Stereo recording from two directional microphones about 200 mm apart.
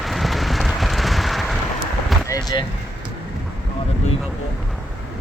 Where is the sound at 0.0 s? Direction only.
Centre (ahead or behind).